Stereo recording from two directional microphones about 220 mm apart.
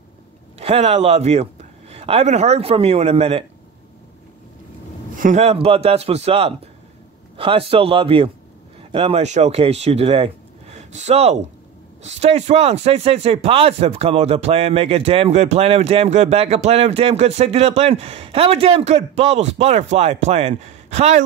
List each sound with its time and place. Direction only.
0.6 s a man's voice: 25° right (ahead or behind)
5.1 s speech: 35° right (ahead or behind)